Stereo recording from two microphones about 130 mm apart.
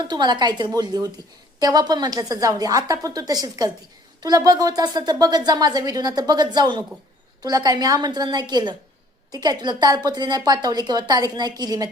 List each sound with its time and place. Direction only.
0.0 s a woman's voice: 35° right (ahead or behind)